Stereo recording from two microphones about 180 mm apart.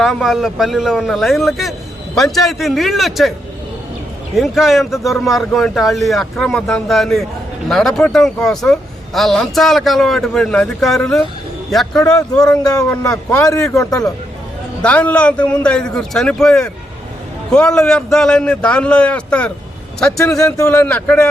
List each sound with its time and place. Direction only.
0.0 s speech: centre (ahead or behind)
4.4 s speech: centre (ahead or behind)
13.0 s a man's voice: 20° left (ahead or behind)
14.8 s speech: 5° left (ahead or behind)
20.1 s a man's voice: 15° left (ahead or behind)